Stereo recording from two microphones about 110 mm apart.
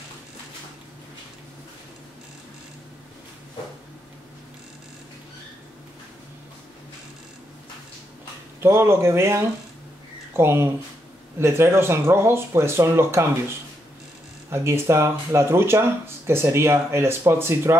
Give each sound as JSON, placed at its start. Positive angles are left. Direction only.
{"t": 8.6, "sound": "speech", "side_deg": -25}
{"t": 14.5, "sound": "speech", "side_deg": -25}